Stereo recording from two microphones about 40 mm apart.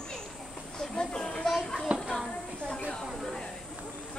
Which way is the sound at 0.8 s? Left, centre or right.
Left.